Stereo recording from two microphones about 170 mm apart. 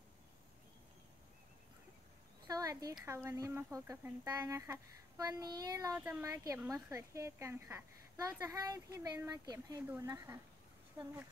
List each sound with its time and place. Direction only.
2.4 s speech: 20° right (ahead or behind)
5.9 s a woman's voice: 10° right (ahead or behind)